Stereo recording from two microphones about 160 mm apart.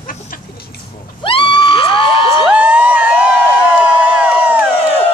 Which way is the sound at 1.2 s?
30° left (ahead or behind).